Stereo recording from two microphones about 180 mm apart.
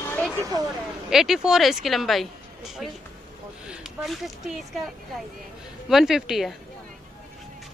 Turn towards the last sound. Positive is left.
turn(degrees=0)  # may be behind; listen again after turning